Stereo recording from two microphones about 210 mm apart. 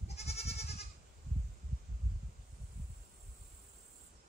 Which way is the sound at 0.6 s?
50° left (ahead or behind).